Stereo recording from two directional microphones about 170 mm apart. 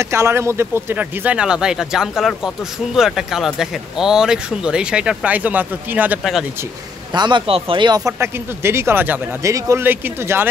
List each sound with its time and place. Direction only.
0.0 s speech: 15° right (ahead or behind)
7.1 s speech: 25° right (ahead or behind)